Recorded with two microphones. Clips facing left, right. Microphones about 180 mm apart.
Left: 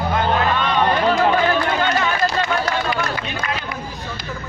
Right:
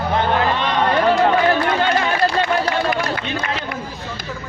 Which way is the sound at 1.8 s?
30° right (ahead or behind).